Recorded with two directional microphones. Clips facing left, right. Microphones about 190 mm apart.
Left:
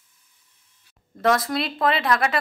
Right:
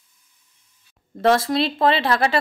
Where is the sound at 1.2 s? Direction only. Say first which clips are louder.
Right 4 dB; 30° right (ahead or behind).